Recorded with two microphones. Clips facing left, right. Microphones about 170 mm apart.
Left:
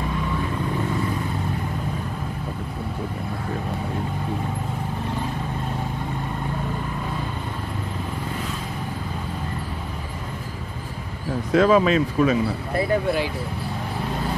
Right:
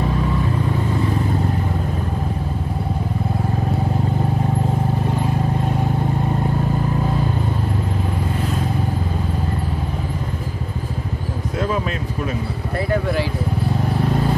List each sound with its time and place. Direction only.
11.5 s speech: 90° left